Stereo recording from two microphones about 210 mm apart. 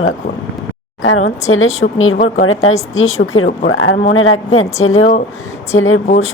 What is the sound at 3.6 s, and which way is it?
A woman's voice, 80° left.